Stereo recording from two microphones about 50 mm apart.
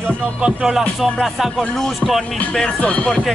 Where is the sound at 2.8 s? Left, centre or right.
Left.